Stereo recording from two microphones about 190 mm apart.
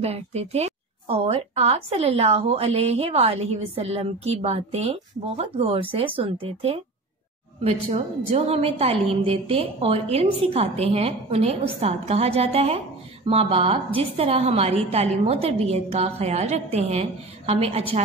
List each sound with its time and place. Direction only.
0.0 s a woman's voice: 35° right (ahead or behind)